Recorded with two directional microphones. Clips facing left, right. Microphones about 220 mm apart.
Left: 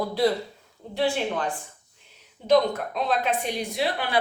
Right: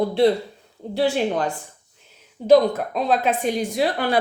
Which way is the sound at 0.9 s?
40° right (ahead or behind).